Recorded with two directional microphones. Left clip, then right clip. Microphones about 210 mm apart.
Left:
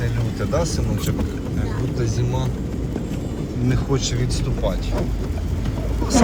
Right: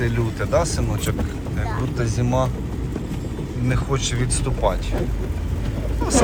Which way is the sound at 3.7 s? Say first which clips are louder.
Even; 5° left (ahead or behind).